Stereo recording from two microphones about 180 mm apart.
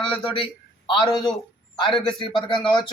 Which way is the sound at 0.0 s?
30° left (ahead or behind).